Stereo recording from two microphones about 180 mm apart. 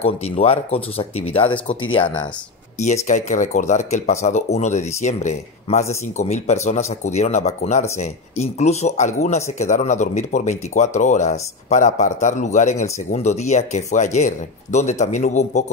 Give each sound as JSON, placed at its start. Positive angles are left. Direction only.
{"t": 0.0, "sound": "speech", "side_deg": 35}
{"t": 3.1, "sound": "speech", "side_deg": 40}